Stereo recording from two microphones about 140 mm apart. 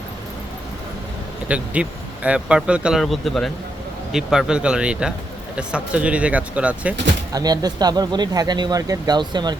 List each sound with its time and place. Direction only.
1.5 s speech: 10° right (ahead or behind)
7.3 s speech: 30° right (ahead or behind)